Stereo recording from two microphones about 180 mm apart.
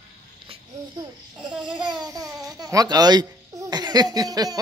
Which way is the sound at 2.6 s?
20° right (ahead or behind).